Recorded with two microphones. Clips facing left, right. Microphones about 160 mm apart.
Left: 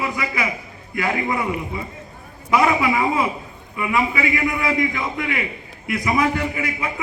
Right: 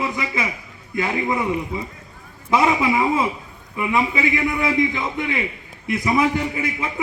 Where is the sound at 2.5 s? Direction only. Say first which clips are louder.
Even; 25° right (ahead or behind).